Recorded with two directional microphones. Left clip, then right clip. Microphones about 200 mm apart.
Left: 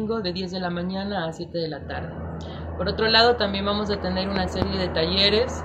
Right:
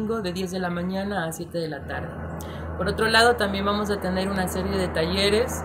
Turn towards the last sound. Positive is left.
turn(degrees=-15)  # may be behind; listen again after turning